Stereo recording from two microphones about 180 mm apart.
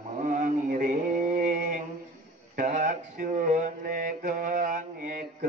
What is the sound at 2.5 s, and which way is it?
Mantra, 50° right (ahead or behind).